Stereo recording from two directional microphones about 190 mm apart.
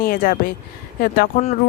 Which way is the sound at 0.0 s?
50° left (ahead or behind).